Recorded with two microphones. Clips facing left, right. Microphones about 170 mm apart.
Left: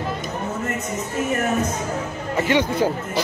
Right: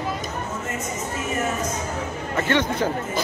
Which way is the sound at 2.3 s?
10° left (ahead or behind).